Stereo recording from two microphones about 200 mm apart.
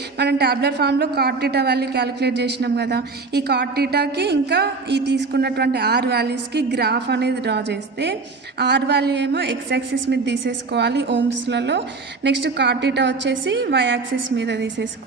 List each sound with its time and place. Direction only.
0.2 s a woman's voice: 55° right (ahead or behind)